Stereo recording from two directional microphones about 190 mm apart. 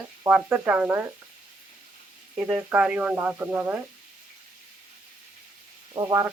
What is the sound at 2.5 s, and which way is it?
Speech, 10° right (ahead or behind).